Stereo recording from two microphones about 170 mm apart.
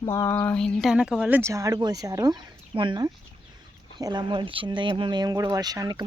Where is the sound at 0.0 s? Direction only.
15° left (ahead or behind).